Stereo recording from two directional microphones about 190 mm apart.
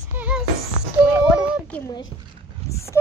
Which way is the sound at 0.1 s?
5° right (ahead or behind).